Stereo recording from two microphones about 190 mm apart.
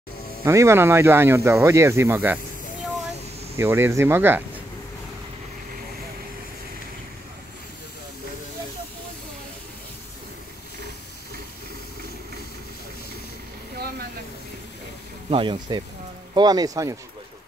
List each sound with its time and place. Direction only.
0.5 s speech: 15° right (ahead or behind)
3.5 s speech: 10° right (ahead or behind)
13.7 s a sound: 55° right (ahead or behind)
15.2 s speech: 25° right (ahead or behind)